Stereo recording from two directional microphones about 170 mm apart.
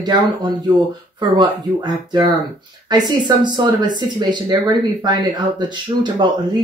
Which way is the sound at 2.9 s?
25° right (ahead or behind).